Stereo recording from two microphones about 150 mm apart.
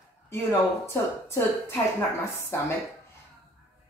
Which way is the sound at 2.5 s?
15° left (ahead or behind).